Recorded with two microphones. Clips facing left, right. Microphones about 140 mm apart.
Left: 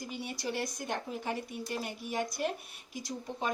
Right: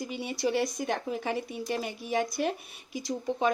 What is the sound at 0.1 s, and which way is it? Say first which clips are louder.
A woman's voice: right 8 dB; 90° right.